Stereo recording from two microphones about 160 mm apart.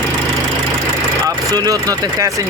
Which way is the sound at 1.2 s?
20° right (ahead or behind).